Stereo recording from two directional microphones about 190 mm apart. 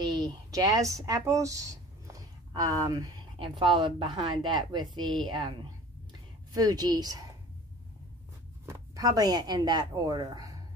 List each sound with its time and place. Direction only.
0.2 s speech: 20° right (ahead or behind)
8.6 s speech: 15° right (ahead or behind)